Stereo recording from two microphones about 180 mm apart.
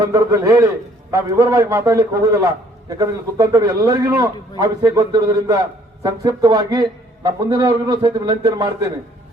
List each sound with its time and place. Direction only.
0.0 s a man's voice: 20° right (ahead or behind)